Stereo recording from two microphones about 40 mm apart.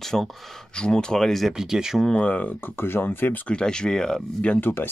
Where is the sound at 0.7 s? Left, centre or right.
Left.